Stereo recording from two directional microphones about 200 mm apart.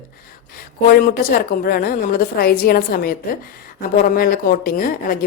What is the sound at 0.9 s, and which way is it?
Speech, 45° left (ahead or behind).